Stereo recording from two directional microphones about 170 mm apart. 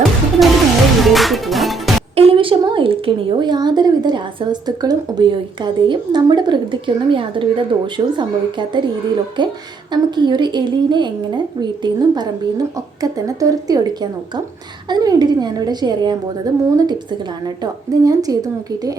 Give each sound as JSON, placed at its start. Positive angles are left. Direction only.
{"t": 0.4, "sound": "music", "side_deg": 0}
{"t": 2.1, "sound": "a woman's voice", "side_deg": -35}